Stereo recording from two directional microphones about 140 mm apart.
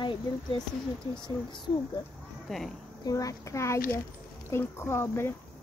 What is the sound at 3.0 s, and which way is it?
Speech, 25° left (ahead or behind).